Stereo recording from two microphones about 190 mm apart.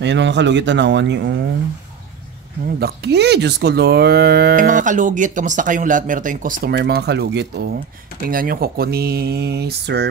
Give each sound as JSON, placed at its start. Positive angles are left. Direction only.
{"t": 0.0, "sound": "speech", "side_deg": -70}
{"t": 2.8, "sound": "speech", "side_deg": -60}
{"t": 8.3, "sound": "speech", "side_deg": -50}